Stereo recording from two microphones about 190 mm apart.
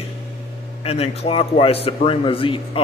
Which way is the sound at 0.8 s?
30° left (ahead or behind).